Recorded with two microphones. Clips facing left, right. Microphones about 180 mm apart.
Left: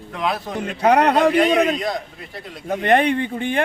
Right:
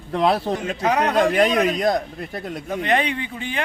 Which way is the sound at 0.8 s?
60° left (ahead or behind).